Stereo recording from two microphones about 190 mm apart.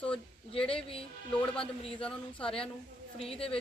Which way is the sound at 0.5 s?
30° left (ahead or behind).